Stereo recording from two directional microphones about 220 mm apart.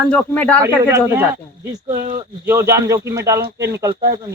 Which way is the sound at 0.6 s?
10° right (ahead or behind).